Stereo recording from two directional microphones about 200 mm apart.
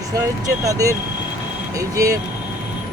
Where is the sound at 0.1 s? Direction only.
15° right (ahead or behind).